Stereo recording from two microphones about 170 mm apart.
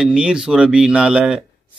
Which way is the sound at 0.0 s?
5° right (ahead or behind).